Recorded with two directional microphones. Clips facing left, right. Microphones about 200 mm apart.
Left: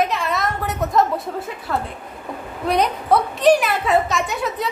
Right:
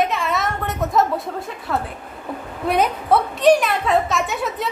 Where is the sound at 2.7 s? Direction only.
5° right (ahead or behind).